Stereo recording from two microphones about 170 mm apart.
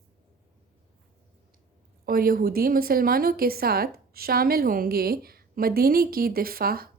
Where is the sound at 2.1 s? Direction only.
60° right (ahead or behind).